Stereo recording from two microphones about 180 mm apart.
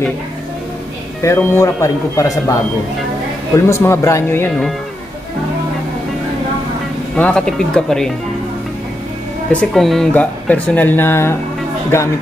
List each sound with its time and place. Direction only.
1.2 s speech: 15° left (ahead or behind)
3.5 s speech: 15° left (ahead or behind)
7.2 s speech: 5° left (ahead or behind)
9.5 s speech: 5° left (ahead or behind)